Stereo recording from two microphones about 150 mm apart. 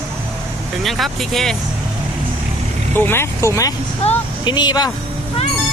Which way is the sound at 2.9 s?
15° left (ahead or behind).